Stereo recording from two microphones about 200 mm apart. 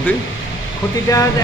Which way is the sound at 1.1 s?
15° left (ahead or behind).